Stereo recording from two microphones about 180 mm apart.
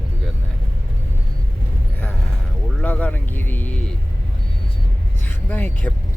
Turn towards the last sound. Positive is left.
turn(degrees=10)  # may be behind; listen again after turning